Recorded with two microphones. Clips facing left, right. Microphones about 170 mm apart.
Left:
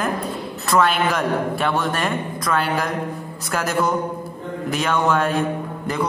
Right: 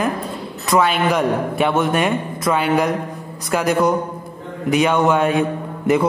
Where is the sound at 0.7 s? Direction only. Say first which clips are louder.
Right 2 dB; 15° right (ahead or behind).